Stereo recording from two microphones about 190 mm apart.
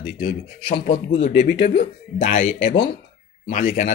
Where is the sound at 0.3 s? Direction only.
45° left (ahead or behind).